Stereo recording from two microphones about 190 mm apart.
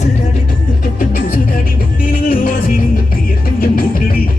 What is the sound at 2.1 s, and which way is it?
Music, 50° left (ahead or behind).